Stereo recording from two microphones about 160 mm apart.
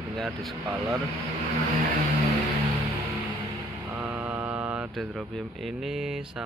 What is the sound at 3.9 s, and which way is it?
Speech, 10° right (ahead or behind).